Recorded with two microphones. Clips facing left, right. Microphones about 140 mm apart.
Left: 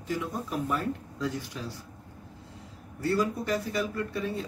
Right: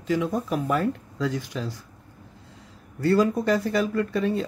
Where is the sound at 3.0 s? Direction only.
90° right.